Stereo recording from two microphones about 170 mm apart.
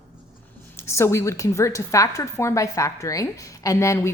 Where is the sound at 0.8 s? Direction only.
15° left (ahead or behind).